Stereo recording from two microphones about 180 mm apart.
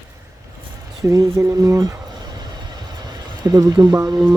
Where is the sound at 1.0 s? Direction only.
15° right (ahead or behind).